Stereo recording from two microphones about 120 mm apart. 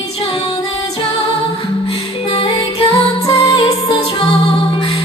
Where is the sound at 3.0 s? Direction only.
35° left (ahead or behind).